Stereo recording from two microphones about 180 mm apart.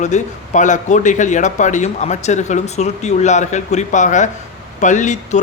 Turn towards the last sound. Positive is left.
turn(degrees=40)  # may be behind; listen again after turning